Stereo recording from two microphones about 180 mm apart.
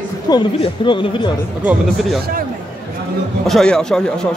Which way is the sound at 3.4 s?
5° left (ahead or behind).